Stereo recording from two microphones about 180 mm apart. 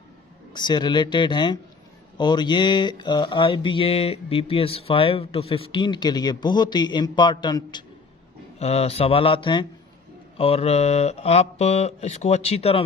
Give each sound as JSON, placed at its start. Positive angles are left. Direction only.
{"t": 0.5, "sound": "mantra", "side_deg": 25}
{"t": 8.5, "sound": "speech", "side_deg": 35}